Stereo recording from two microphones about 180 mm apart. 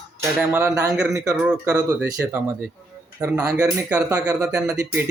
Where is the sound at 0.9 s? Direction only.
Centre (ahead or behind).